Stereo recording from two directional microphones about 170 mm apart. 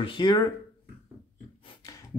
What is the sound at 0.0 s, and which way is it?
Speech, 25° left (ahead or behind).